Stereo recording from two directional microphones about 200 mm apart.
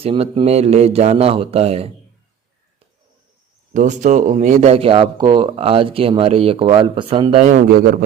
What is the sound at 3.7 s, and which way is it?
Speech, 35° right (ahead or behind).